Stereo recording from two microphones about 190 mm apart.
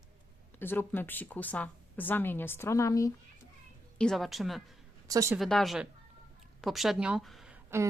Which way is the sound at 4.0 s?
Centre (ahead or behind).